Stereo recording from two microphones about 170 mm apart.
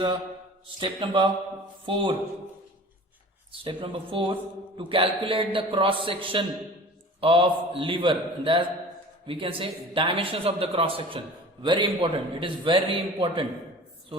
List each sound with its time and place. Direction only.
0.8 s a man's voice: 30° right (ahead or behind)
3.6 s a man's voice: 30° right (ahead or behind)